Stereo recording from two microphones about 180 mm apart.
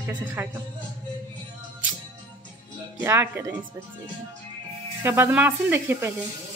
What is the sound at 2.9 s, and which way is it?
Speech, 10° right (ahead or behind).